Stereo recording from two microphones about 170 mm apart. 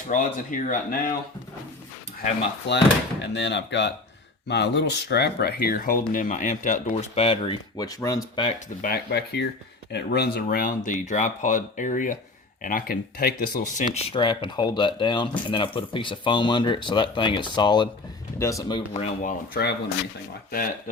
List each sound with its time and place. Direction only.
0.1 s speech: 50° left (ahead or behind)
2.6 s speech: 90° left; by 8.4 s 20° left (ahead or behind)
9.0 s speech: 75° left (ahead or behind); by 13.8 s 60° left (ahead or behind)
13.9 s speech: 30° left (ahead or behind)
18.9 s speech: 45° left (ahead or behind)
19.6 s speech: 65° left (ahead or behind)